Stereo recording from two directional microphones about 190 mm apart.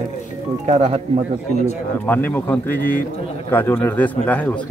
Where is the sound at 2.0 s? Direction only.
10° left (ahead or behind).